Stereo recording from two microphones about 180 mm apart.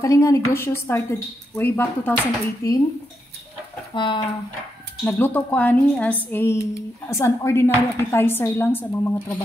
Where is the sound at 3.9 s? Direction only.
25° left (ahead or behind).